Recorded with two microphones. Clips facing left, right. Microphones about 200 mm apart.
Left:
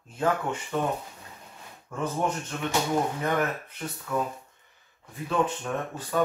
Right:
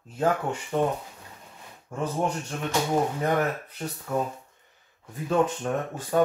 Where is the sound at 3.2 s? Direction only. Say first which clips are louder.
Right 2 dB; 35° right (ahead or behind).